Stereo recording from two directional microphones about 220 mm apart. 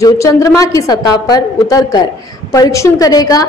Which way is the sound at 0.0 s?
15° left (ahead or behind).